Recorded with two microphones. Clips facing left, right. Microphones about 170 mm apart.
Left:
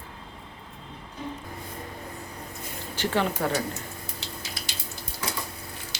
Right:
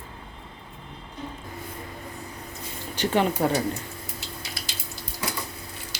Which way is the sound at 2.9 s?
15° right (ahead or behind).